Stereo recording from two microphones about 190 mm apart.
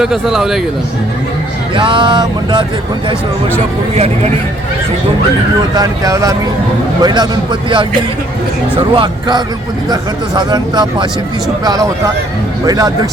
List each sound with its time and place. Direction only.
0.0 s a man's voice: centre (ahead or behind)
1.7 s speech: 25° right (ahead or behind)
3.9 s speech: 35° right (ahead or behind)
5.7 s speech: 20° right (ahead or behind)
9.0 s speech: 25° right (ahead or behind)